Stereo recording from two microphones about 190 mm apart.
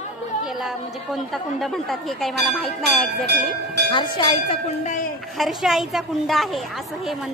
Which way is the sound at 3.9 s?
25° left (ahead or behind).